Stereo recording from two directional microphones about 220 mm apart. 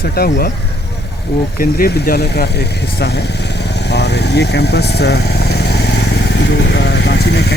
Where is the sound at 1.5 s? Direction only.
40° left (ahead or behind).